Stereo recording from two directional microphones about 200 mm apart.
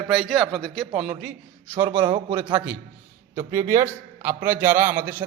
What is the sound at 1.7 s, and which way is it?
A man's voice, 25° right (ahead or behind).